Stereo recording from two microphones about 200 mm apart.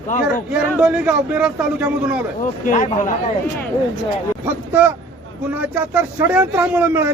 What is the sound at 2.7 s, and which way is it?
Speech, 40° left (ahead or behind).